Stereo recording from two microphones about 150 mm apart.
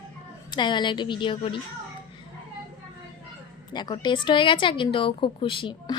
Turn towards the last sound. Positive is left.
turn(degrees=35)  # may be behind; listen again after turning